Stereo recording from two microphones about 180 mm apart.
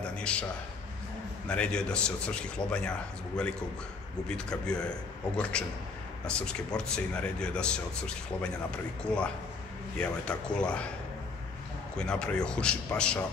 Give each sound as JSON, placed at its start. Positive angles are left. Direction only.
{"t": 0.0, "sound": "a sound", "side_deg": 5}
{"t": 1.5, "sound": "speech", "side_deg": 5}
{"t": 4.3, "sound": "speech", "side_deg": 5}
{"t": 9.0, "sound": "speech", "side_deg": 5}
{"t": 12.0, "sound": "speech", "side_deg": 5}